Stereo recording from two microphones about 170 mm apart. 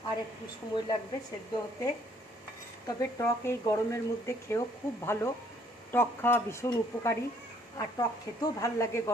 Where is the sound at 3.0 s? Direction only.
15° left (ahead or behind).